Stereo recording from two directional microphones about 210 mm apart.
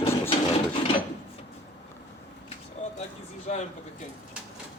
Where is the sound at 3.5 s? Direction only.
35° left (ahead or behind).